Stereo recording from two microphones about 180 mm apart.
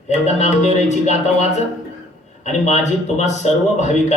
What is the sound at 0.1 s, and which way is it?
A man's voice, 40° left (ahead or behind).